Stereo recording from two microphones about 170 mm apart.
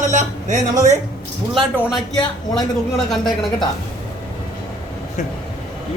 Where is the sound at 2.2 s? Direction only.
25° left (ahead or behind).